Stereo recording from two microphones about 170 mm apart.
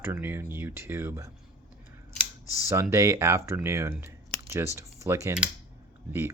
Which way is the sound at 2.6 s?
15° right (ahead or behind).